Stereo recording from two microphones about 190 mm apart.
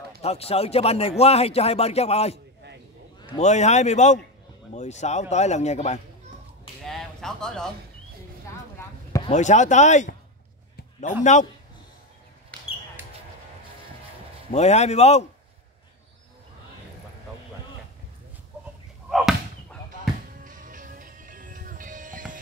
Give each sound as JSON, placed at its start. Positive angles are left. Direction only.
{"t": 0.2, "sound": "a man's voice", "side_deg": 35}
{"t": 6.8, "sound": "a sound", "side_deg": 0}
{"t": 9.3, "sound": "a man's voice", "side_deg": 40}
{"t": 14.5, "sound": "a man's voice", "side_deg": 35}
{"t": 19.0, "sound": "chop", "side_deg": 0}
{"t": 20.4, "sound": "music", "side_deg": -45}